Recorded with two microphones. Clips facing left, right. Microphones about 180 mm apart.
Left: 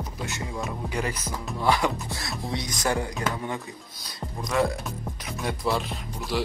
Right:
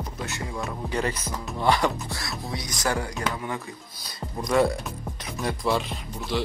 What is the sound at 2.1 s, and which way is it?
Speech, 25° left (ahead or behind).